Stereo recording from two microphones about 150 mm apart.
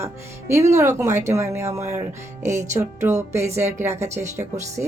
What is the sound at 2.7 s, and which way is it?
Music, 50° right (ahead or behind).